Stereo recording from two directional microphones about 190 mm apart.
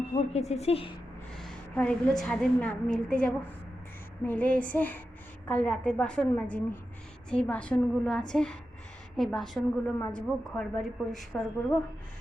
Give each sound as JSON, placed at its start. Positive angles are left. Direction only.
{"t": 0.1, "sound": "a woman's voice", "side_deg": 35}
{"t": 1.4, "sound": "a woman's voice", "side_deg": 5}